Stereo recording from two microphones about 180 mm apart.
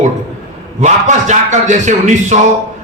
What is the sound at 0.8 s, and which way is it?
A man's voice, 40° right (ahead or behind).